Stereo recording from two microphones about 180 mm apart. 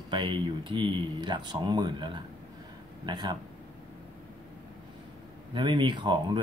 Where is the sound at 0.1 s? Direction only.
25° right (ahead or behind).